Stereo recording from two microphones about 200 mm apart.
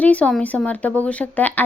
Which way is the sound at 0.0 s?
5° left (ahead or behind).